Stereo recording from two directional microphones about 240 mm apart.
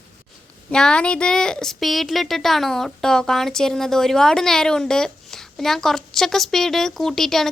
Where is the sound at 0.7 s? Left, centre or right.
Centre.